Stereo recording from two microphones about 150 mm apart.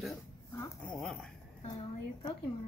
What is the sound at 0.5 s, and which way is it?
Speech, 15° left (ahead or behind).